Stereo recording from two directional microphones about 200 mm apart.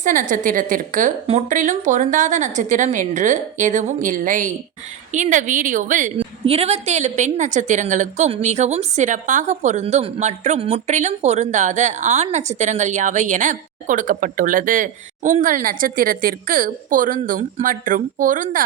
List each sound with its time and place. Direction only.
0.0 s a woman's voice: 40° right (ahead or behind)